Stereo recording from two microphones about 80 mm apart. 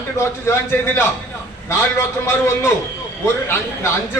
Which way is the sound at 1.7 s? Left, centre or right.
Left.